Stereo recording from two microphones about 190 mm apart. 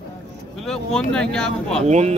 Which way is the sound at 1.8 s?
35° right (ahead or behind).